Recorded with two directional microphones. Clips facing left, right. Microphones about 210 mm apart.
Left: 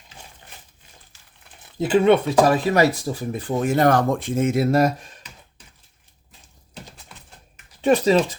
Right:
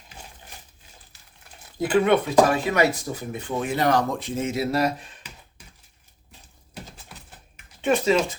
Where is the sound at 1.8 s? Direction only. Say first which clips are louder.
Left 3 dB; 25° left (ahead or behind); by 4.9 s 50° left (ahead or behind).